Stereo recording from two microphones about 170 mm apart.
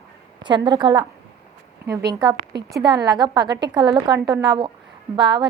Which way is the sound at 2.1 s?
20° right (ahead or behind).